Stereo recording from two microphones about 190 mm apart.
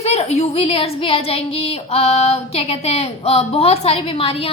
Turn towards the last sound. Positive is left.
turn(degrees=30)  # may be behind; listen again after turning